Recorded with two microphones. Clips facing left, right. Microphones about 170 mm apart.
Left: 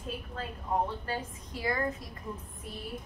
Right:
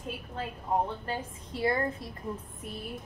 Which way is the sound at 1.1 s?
30° right (ahead or behind).